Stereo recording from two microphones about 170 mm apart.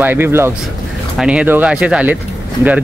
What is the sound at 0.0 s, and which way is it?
Speech, 10° right (ahead or behind).